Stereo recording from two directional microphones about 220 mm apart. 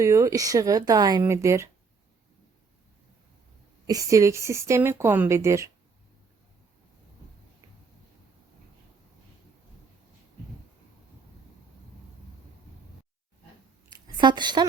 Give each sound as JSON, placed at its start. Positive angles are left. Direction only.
{"t": 0.0, "sound": "speech", "side_deg": -15}
{"t": 3.8, "sound": "speech", "side_deg": -15}
{"t": 13.9, "sound": "a sound", "side_deg": -20}